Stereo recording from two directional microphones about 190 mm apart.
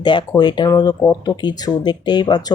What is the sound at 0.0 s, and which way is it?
Speech, 25° left (ahead or behind).